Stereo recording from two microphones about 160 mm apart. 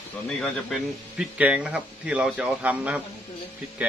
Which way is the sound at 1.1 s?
5° right (ahead or behind).